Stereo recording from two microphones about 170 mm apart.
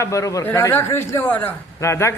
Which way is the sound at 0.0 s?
20° left (ahead or behind).